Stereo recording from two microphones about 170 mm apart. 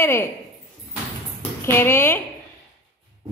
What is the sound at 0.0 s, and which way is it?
Speech, 15° left (ahead or behind).